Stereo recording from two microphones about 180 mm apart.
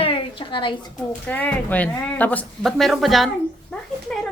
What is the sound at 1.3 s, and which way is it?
A woman's voice, 10° left (ahead or behind).